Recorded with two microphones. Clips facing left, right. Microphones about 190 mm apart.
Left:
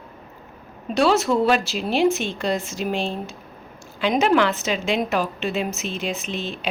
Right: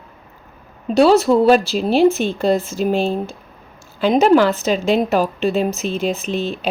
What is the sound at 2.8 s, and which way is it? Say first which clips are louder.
Speech: right 7 dB; 40° right (ahead or behind).